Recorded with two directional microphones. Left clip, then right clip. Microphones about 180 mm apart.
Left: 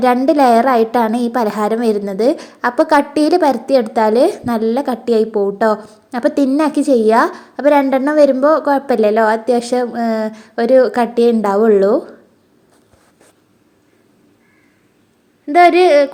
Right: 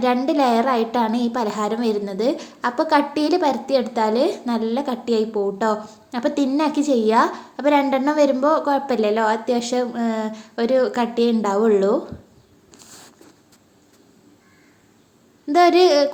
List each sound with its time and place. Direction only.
0.0 s a woman's voice: 40° left (ahead or behind)
15.4 s a woman's voice: 15° left (ahead or behind)